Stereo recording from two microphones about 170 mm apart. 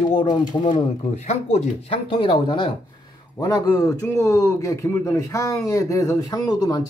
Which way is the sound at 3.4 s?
20° left (ahead or behind).